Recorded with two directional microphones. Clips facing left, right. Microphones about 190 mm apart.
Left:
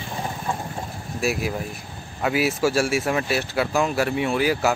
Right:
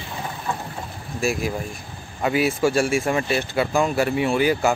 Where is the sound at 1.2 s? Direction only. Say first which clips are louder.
Right 1 dB; 5° left (ahead or behind).